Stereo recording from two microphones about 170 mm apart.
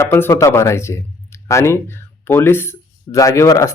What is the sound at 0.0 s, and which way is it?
Speech, 15° left (ahead or behind).